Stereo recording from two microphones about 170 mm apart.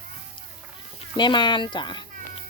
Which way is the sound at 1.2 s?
25° left (ahead or behind).